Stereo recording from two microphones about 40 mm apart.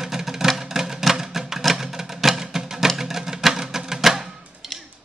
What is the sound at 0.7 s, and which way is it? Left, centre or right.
Music, centre.